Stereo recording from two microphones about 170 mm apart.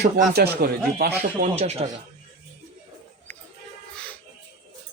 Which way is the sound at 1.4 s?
40° right (ahead or behind).